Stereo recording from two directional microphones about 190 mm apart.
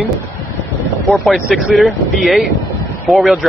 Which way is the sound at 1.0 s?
Centre (ahead or behind).